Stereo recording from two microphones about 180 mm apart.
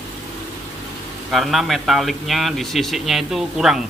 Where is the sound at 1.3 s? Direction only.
Centre (ahead or behind).